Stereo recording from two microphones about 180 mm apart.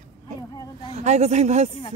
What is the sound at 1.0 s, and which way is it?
Speech, 40° right (ahead or behind).